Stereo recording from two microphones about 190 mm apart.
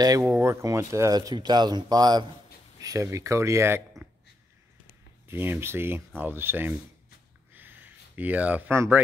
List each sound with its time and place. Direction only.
0.2 s speech: 10° right (ahead or behind)
5.3 s speech: 10° right (ahead or behind)
7.5 s a sound: 10° right (ahead or behind)